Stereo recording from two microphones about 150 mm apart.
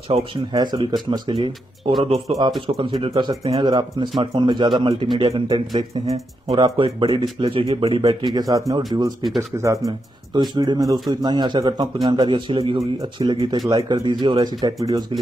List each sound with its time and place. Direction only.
0.1 s a man's voice: 30° right (ahead or behind)